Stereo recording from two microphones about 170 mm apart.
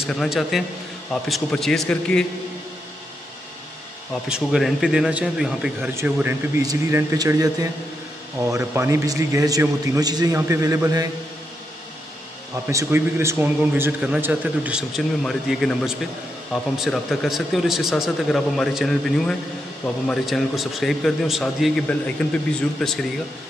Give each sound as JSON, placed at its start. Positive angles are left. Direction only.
{"t": 0.0, "sound": "a man's voice", "side_deg": 0}
{"t": 4.3, "sound": "a man's voice", "side_deg": 0}
{"t": 12.6, "sound": "a man's voice", "side_deg": -15}